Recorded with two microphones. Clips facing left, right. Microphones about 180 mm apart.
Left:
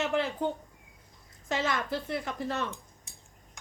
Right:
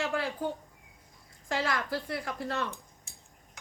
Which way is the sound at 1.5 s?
20° left (ahead or behind).